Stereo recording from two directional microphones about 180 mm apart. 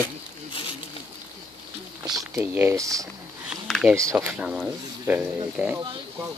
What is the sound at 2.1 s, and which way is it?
Speech, 5° right (ahead or behind).